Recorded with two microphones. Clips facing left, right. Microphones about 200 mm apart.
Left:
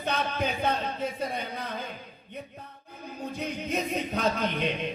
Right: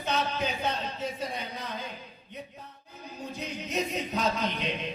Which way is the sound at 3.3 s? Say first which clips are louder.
Left 1 dB; 55° left (ahead or behind).